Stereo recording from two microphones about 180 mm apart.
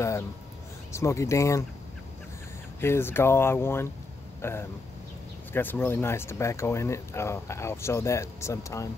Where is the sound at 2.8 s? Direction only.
15° left (ahead or behind).